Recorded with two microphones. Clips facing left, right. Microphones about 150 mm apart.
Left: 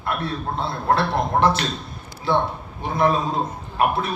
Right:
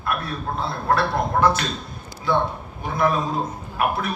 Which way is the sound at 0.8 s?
25° left (ahead or behind).